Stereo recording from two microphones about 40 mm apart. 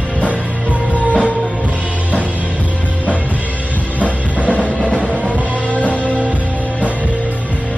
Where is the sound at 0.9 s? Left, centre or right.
Left.